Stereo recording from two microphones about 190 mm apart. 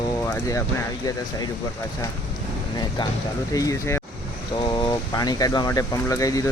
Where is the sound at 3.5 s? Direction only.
15° left (ahead or behind).